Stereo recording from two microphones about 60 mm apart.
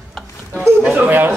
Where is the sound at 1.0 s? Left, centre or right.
Right.